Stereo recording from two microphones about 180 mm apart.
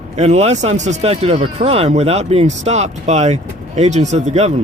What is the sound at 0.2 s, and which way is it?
Speech, 35° right (ahead or behind).